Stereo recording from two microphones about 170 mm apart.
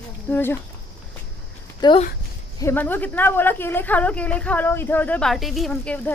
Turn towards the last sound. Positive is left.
turn(degrees=5)  # may be behind; listen again after turning